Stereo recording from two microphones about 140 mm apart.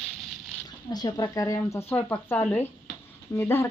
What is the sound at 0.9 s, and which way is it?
Speech, 30° left (ahead or behind).